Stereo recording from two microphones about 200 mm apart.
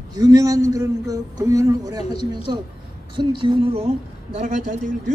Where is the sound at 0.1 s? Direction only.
20° right (ahead or behind).